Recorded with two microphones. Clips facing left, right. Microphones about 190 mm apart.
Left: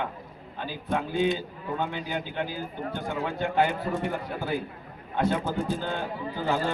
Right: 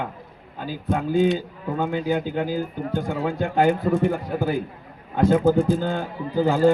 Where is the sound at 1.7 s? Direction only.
40° right (ahead or behind).